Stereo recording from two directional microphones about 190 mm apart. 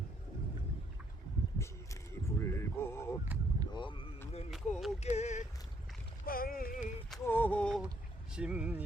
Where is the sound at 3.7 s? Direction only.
25° left (ahead or behind).